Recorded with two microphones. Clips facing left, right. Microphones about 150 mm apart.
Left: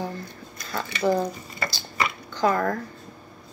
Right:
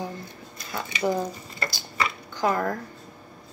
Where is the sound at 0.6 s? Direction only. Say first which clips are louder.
Left 1 dB; 20° right (ahead or behind).